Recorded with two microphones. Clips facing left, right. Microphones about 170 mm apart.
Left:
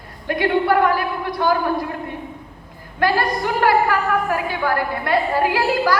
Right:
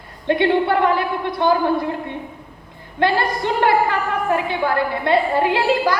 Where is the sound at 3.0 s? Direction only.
25° right (ahead or behind).